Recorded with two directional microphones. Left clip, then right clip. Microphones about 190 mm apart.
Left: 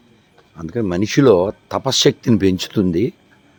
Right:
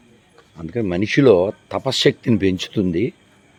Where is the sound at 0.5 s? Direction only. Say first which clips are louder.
Left 1 dB; 15° left (ahead or behind).